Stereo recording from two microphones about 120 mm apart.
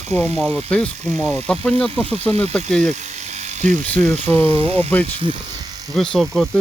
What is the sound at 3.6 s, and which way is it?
Speech, 90° right.